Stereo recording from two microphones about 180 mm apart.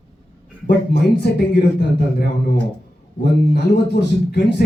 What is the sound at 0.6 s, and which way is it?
A man's voice, 65° left (ahead or behind).